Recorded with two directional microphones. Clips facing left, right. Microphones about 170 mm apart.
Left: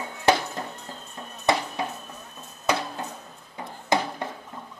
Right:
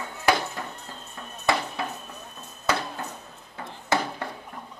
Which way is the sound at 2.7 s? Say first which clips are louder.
Left 1 dB; 15° left (ahead or behind).